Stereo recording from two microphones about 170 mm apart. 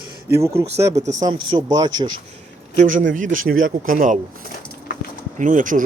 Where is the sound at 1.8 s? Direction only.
25° right (ahead or behind).